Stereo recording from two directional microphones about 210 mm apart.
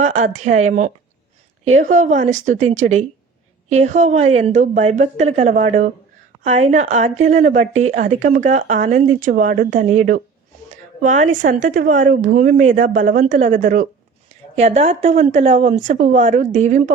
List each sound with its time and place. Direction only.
0.0 s a woman's voice: 35° right (ahead or behind)